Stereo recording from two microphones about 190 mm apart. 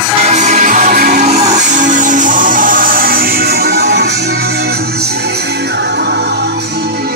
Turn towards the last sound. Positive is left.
turn(degrees=-60)  # may be behind; listen again after turning